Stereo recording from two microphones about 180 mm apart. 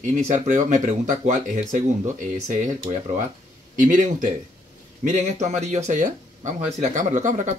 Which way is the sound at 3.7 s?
45° right (ahead or behind).